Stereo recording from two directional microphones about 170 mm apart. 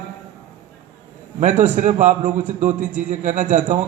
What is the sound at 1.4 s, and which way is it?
A man's voice, 50° right (ahead or behind).